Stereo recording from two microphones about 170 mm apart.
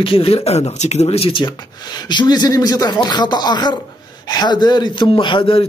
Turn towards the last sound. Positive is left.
turn(degrees=30)  # may be behind; listen again after turning